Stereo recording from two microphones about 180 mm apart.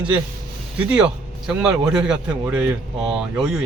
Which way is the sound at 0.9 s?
5° right (ahead or behind).